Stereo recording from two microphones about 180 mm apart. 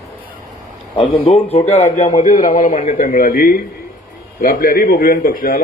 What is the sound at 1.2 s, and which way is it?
A man's voice, 30° left (ahead or behind).